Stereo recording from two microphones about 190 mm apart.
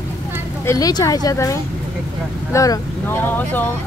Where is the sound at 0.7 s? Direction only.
20° left (ahead or behind).